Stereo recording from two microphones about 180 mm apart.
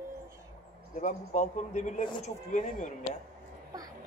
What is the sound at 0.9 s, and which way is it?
A man's voice, 45° left (ahead or behind).